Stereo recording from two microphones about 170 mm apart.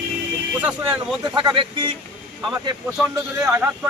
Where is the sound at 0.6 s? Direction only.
5° right (ahead or behind).